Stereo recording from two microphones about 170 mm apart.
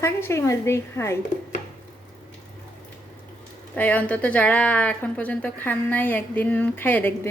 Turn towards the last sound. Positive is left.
turn(degrees=10)  # may be behind; listen again after turning